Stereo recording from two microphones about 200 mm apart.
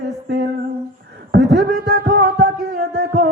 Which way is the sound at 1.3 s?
55° right (ahead or behind).